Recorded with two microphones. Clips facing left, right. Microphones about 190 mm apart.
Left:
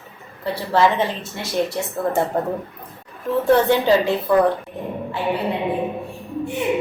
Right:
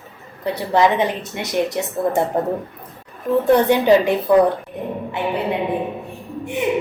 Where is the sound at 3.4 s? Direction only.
20° right (ahead or behind).